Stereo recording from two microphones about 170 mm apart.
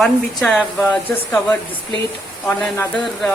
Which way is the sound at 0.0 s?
5° left (ahead or behind).